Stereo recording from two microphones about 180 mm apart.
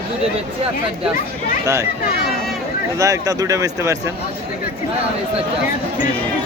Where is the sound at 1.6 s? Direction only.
15° right (ahead or behind).